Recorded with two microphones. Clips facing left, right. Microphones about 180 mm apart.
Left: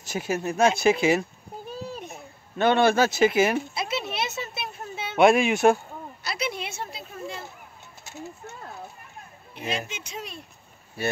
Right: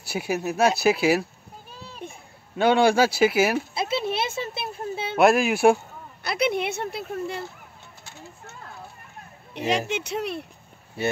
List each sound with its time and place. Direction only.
0.0 s speech: 10° right (ahead or behind)
2.5 s speech: 10° right (ahead or behind)
3.7 s a sound: 30° right (ahead or behind)
5.1 s speech: centre (ahead or behind)
6.2 s speech: 55° right (ahead or behind)
9.5 s speech: 75° right (ahead or behind)
11.0 s speech: 25° right (ahead or behind)